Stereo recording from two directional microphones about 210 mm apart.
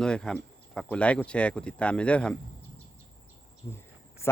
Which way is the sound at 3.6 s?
25° left (ahead or behind).